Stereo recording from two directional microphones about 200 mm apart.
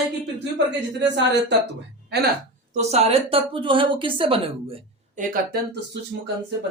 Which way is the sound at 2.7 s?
30° right (ahead or behind).